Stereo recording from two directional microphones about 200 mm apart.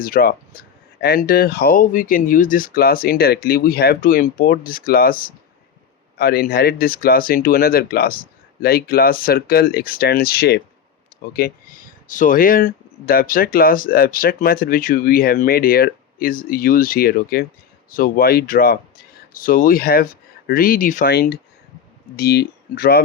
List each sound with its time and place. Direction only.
0.0 s speech: 45° left (ahead or behind)